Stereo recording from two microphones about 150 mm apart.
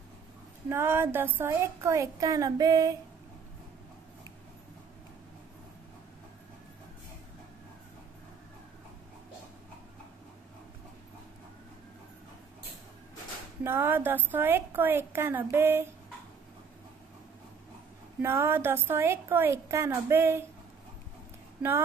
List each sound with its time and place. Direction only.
0.7 s a woman's voice: 15° right (ahead or behind)
13.7 s a woman's voice: 15° right (ahead or behind)
18.2 s a woman's voice: 15° right (ahead or behind)
21.6 s a woman's voice: 5° right (ahead or behind)